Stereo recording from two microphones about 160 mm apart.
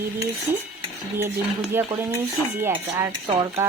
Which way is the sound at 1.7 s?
15° right (ahead or behind).